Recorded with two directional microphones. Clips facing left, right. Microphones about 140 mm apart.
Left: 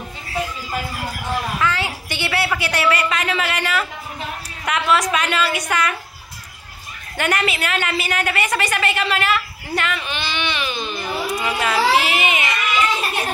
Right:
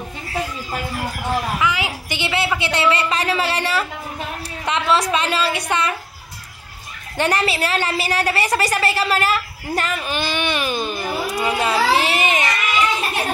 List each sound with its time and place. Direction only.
1.6 s a sound: 15° right (ahead or behind); by 3.8 s 35° right (ahead or behind)
4.6 s a woman's voice: 30° right (ahead or behind)
7.2 s a woman's voice: 30° right (ahead or behind)
11.3 s baby cry: 35° right (ahead or behind)